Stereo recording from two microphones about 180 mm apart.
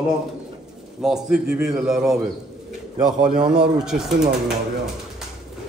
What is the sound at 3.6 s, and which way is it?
Speech, 5° right (ahead or behind).